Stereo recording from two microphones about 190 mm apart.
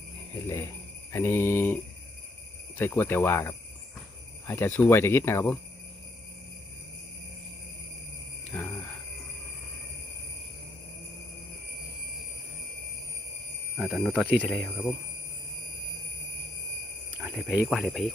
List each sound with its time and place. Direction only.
0.4 s speech: 15° left (ahead or behind)
8.5 s jingle bell: 5° left (ahead or behind)
13.7 s speech: centre (ahead or behind)
17.2 s a sound: 5° right (ahead or behind)
17.7 s speech: centre (ahead or behind)